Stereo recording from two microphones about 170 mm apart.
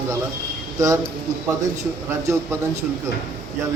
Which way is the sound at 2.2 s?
15° right (ahead or behind).